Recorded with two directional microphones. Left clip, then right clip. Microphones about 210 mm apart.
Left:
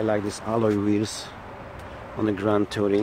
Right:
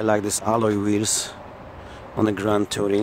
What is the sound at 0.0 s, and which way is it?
Speech, 35° right (ahead or behind).